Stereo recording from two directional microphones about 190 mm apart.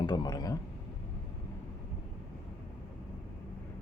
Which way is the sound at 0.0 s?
20° left (ahead or behind).